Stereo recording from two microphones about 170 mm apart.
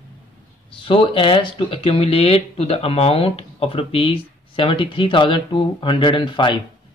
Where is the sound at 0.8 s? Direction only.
30° left (ahead or behind).